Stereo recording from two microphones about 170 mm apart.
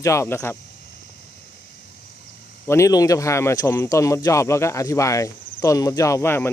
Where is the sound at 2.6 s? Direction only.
15° left (ahead or behind).